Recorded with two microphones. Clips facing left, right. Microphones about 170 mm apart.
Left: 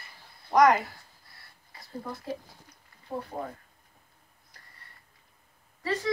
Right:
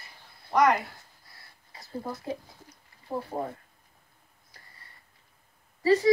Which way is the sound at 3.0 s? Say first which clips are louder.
Right 3 dB; 30° right (ahead or behind).